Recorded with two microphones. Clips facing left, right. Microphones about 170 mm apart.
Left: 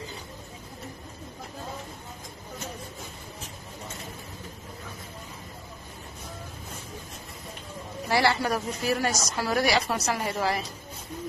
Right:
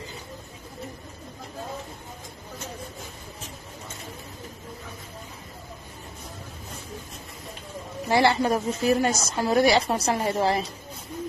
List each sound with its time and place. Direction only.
8.1 s a woman's voice: 20° right (ahead or behind)